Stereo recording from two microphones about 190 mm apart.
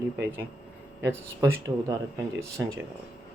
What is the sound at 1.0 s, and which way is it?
Speech, 15° right (ahead or behind).